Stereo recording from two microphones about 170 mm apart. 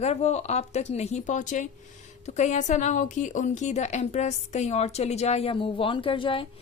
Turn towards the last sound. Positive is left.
turn(degrees=30)  # may be behind; listen again after turning